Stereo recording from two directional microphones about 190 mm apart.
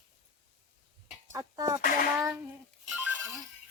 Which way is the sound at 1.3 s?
20° right (ahead or behind).